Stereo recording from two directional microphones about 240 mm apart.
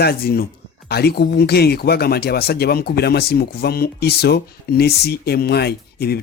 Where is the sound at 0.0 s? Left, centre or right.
Left.